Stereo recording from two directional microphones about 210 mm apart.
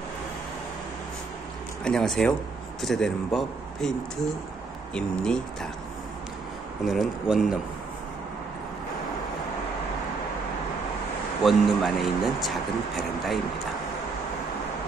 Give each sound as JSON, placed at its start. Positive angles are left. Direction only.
{"t": 1.9, "sound": "speech", "side_deg": 0}
{"t": 4.9, "sound": "speech", "side_deg": 5}
{"t": 6.8, "sound": "speech", "side_deg": 0}
{"t": 11.4, "sound": "speech", "side_deg": 0}